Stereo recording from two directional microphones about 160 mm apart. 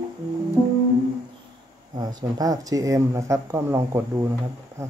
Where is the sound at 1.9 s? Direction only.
25° right (ahead or behind).